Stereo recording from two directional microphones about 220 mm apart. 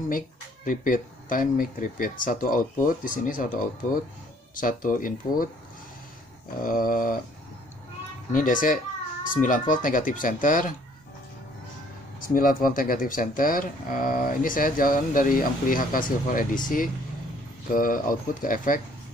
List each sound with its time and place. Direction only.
0.7 s speech: 40° left (ahead or behind)
6.6 s speech: 40° left (ahead or behind)
8.3 s speech: 35° left (ahead or behind)
12.2 s speech: 40° left (ahead or behind)